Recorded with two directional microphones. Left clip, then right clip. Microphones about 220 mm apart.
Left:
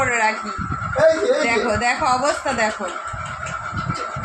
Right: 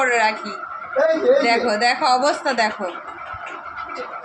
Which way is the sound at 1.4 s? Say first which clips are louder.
Right 1 dB; 15° right (ahead or behind).